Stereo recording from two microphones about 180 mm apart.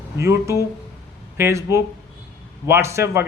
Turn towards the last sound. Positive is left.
turn(degrees=-15)  # may be behind; listen again after turning